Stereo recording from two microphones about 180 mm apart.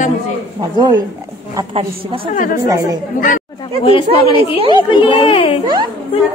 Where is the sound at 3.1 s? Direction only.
50° left (ahead or behind).